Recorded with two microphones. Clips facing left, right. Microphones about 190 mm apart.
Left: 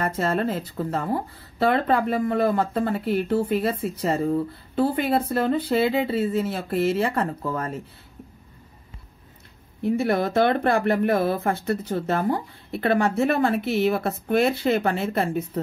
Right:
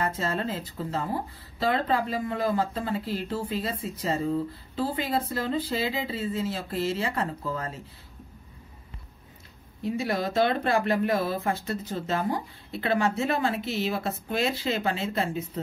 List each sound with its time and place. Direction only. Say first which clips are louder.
0.0 s speech: left 5 dB; 65° left (ahead or behind)
9.8 s speech: left 6 dB; 60° left (ahead or behind)